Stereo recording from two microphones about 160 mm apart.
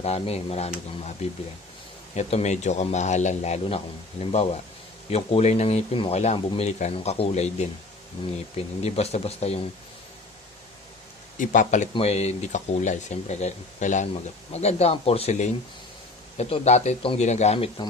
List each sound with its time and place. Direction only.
0.0 s speech: 40° left (ahead or behind)
8.8 s speech: 40° left (ahead or behind)
11.3 s speech: 50° left (ahead or behind)
11.9 s speech: 40° left (ahead or behind)